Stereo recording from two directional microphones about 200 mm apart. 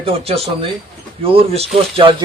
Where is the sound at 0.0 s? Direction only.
30° right (ahead or behind).